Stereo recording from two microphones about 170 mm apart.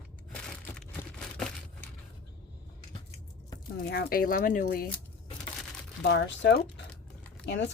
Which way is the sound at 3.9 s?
70° left (ahead or behind).